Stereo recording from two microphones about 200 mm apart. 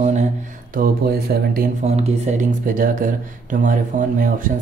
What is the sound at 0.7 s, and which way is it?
Speech, 50° right (ahead or behind).